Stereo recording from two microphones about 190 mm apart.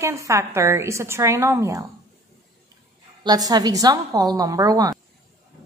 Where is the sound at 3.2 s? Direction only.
20° right (ahead or behind).